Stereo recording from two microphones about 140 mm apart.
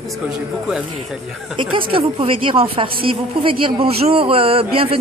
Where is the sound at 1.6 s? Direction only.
40° right (ahead or behind).